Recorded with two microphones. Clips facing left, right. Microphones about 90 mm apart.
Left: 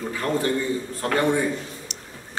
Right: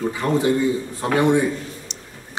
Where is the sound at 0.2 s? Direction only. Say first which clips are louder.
Right 5 dB; 20° right (ahead or behind).